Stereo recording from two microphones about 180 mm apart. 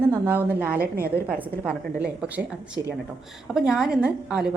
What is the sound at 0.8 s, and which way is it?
Speech, 55° right (ahead or behind).